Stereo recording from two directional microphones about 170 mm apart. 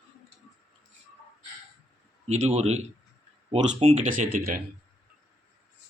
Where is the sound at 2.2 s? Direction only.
40° right (ahead or behind).